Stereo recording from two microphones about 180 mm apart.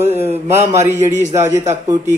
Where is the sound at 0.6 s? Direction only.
40° right (ahead or behind).